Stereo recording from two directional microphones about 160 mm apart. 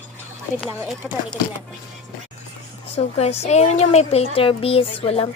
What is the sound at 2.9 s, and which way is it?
A woman's voice, 40° left (ahead or behind).